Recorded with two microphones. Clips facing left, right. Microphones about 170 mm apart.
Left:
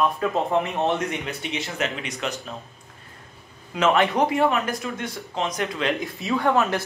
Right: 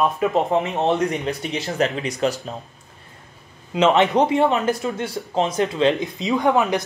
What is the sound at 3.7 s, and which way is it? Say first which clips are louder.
Speech: right 4 dB; 20° right (ahead or behind).